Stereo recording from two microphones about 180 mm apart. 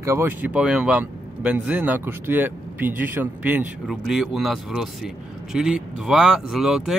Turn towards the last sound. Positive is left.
turn(degrees=-5)  # may be behind; listen again after turning